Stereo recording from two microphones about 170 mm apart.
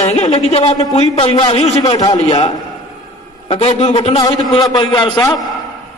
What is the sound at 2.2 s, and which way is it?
A man's voice, 40° left (ahead or behind).